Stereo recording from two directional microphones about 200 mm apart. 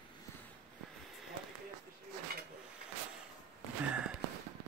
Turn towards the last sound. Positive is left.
turn(degrees=-5)  # may be behind; listen again after turning